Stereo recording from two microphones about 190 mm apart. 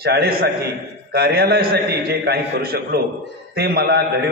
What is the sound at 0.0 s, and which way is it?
A man's voice, 55° right (ahead or behind).